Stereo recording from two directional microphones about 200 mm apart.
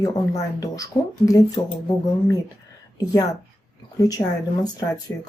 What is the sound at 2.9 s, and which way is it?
Speech, 20° left (ahead or behind).